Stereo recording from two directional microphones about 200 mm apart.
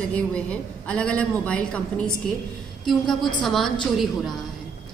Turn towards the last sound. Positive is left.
turn(degrees=0)  # may be behind; listen again after turning